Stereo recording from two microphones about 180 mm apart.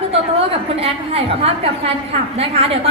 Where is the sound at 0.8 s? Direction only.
35° right (ahead or behind).